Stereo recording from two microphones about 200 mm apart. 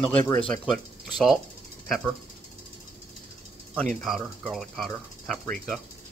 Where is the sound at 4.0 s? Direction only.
Centre (ahead or behind).